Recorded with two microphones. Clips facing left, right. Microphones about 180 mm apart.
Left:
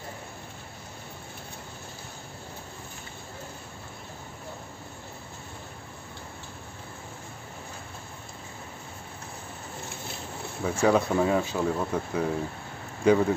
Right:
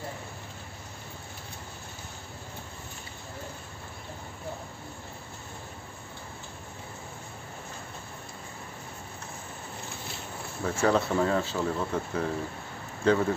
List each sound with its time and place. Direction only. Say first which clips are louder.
10.6 s speech: left 2 dB; 10° left (ahead or behind)